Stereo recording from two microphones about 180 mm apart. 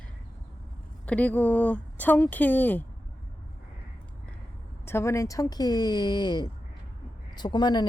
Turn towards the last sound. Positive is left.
turn(degrees=25)  # may be behind; listen again after turning